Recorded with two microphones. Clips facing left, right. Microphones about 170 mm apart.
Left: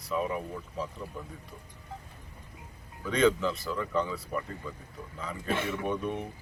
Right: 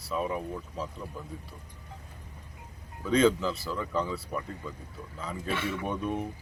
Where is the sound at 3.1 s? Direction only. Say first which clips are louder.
Right 1 dB; centre (ahead or behind).